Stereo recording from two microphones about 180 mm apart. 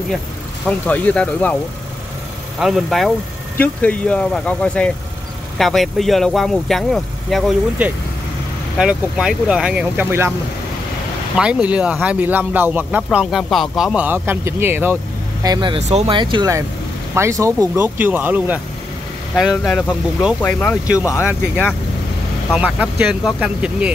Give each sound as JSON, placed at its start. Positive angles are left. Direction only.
{"t": 0.7, "sound": "speech", "side_deg": 10}
{"t": 2.6, "sound": "speech", "side_deg": 0}
{"t": 11.3, "sound": "speech", "side_deg": -5}
{"t": 15.4, "sound": "speech", "side_deg": -25}
{"t": 21.0, "sound": "speech", "side_deg": 15}
{"t": 22.5, "sound": "speech", "side_deg": -10}